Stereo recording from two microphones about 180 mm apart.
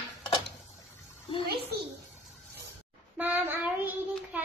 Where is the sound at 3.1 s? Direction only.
10° right (ahead or behind).